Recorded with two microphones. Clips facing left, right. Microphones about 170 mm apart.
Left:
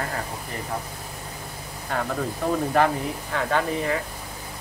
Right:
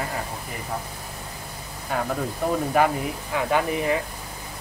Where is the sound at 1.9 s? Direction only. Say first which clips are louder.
Right 1 dB; 5° right (ahead or behind).